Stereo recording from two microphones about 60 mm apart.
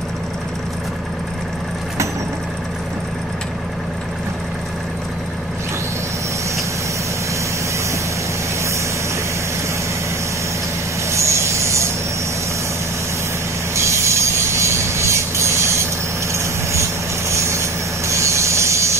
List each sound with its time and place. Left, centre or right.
11.1 s vehicle: right
13.7 s train: right
17.3 s train: right